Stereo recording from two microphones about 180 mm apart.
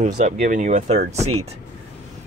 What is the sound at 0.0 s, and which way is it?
Speech, 45° right (ahead or behind).